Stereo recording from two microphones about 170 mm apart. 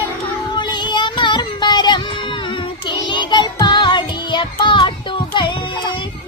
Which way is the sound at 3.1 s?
25° left (ahead or behind).